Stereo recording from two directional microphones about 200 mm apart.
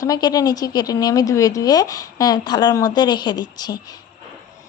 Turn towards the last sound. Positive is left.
turn(degrees=20)  # may be behind; listen again after turning